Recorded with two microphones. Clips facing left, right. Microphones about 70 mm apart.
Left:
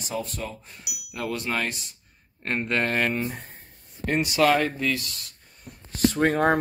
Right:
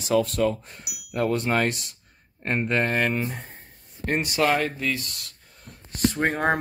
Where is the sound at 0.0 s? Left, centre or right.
Right.